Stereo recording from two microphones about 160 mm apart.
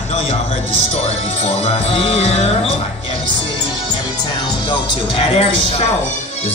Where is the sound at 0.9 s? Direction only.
40° left (ahead or behind).